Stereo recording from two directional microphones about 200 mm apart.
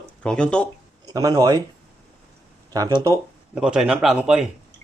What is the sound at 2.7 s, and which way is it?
Speech, 20° right (ahead or behind).